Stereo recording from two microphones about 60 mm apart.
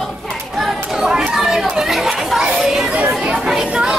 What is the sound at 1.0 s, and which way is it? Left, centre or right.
Chatter, centre.